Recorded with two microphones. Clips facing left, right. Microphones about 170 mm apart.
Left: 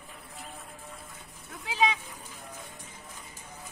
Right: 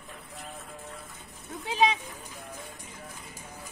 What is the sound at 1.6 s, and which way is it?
Speech, 20° right (ahead or behind).